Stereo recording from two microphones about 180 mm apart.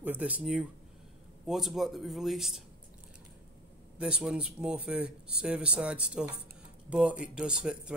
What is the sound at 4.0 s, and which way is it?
Speech, 5° right (ahead or behind).